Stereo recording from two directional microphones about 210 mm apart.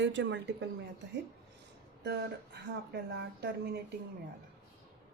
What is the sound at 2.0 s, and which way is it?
Speech, 50° right (ahead or behind).